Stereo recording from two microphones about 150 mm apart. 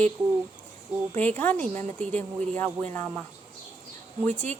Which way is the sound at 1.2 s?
10° left (ahead or behind).